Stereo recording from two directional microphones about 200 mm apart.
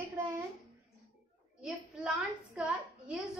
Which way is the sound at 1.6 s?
5° right (ahead or behind).